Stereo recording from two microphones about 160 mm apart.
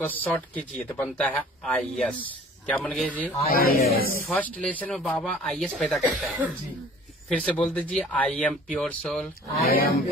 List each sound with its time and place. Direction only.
0.0 s speech: 10° left (ahead or behind)
3.4 s speech: 70° left (ahead or behind)
4.3 s speech: 5° left (ahead or behind)
7.2 s speech: 5° left (ahead or behind)
9.6 s speech: 70° left (ahead or behind)